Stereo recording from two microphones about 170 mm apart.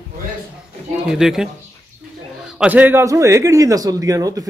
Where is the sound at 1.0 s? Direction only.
5° right (ahead or behind).